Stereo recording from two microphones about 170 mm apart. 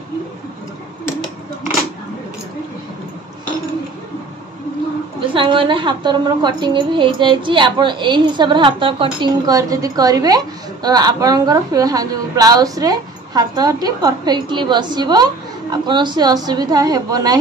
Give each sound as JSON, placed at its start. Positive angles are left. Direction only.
{"t": 5.3, "sound": "a woman's voice", "side_deg": -30}